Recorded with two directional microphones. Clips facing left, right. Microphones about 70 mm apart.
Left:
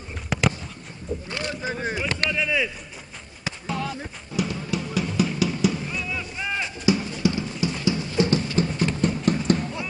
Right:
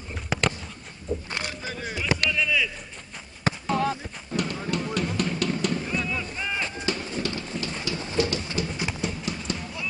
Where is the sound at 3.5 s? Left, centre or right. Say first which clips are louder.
Right 6 dB; right.